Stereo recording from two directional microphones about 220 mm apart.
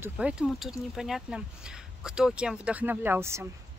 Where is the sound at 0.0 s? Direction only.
5° right (ahead or behind).